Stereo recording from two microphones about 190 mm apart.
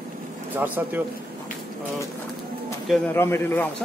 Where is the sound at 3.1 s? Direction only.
10° left (ahead or behind).